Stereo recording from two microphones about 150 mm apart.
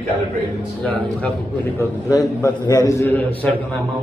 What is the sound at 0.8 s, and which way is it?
Speech, 5° left (ahead or behind).